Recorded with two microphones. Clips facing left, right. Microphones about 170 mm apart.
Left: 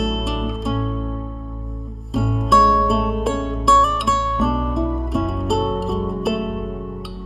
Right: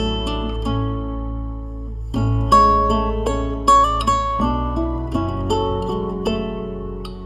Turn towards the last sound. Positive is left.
turn(degrees=0)  # may be behind; listen again after turning